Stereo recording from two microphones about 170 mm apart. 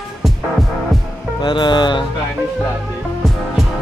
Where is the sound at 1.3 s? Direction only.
25° left (ahead or behind).